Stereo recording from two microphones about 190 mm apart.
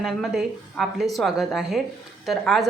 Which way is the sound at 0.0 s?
Centre (ahead or behind).